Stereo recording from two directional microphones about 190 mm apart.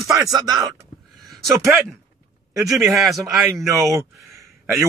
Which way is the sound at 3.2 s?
15° right (ahead or behind).